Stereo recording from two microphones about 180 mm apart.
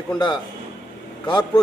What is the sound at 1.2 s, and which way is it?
Speech, 25° left (ahead or behind).